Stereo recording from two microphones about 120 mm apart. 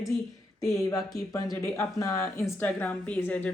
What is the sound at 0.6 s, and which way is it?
A woman's voice, 25° left (ahead or behind).